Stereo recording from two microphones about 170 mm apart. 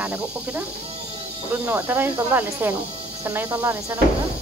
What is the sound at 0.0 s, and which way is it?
Speech, 10° right (ahead or behind).